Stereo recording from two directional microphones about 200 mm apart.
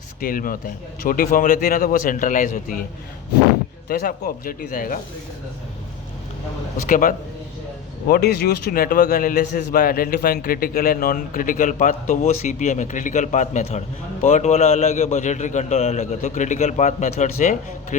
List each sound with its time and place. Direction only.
0.2 s a man's voice: 45° left (ahead or behind)
3.8 s a man's voice: 50° left (ahead or behind)
6.8 s a man's voice: 40° left (ahead or behind)